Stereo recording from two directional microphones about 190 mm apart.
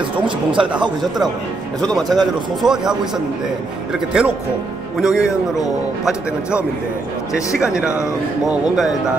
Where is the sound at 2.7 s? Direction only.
5° right (ahead or behind).